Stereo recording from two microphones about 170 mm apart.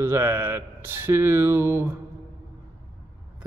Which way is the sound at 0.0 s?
15° right (ahead or behind).